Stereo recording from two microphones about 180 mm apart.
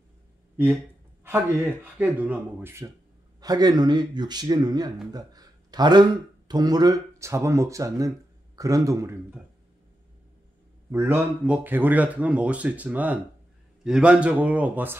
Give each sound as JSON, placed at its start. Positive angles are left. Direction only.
{"t": 2.0, "sound": "speech", "side_deg": -10}
{"t": 10.9, "sound": "speech", "side_deg": -15}